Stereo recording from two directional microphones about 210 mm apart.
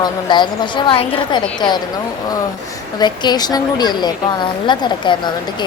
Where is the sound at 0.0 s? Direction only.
20° left (ahead or behind).